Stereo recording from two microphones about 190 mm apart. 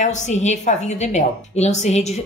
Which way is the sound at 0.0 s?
40° left (ahead or behind).